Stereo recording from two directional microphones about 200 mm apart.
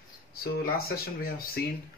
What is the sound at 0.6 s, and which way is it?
Speech, 45° left (ahead or behind).